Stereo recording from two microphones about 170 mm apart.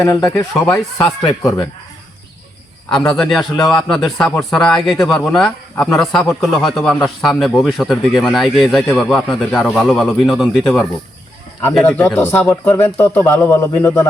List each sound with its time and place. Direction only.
0.0 s speech: 20° left (ahead or behind)
3.1 s a man's voice: centre (ahead or behind)
11.7 s speech: 10° left (ahead or behind)